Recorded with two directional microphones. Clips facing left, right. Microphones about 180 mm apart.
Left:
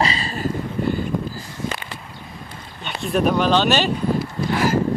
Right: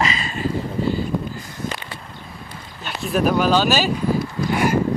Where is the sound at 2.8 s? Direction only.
Centre (ahead or behind).